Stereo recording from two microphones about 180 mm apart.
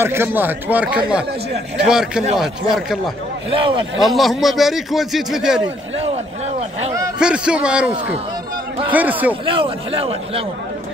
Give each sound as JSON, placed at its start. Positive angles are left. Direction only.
{"t": 0.0, "sound": "a man's voice", "side_deg": -15}
{"t": 4.0, "sound": "a man's voice", "side_deg": 0}
{"t": 7.2, "sound": "a man's voice", "side_deg": -5}
{"t": 8.9, "sound": "speech", "side_deg": -10}
{"t": 9.3, "sound": "a man's voice", "side_deg": -30}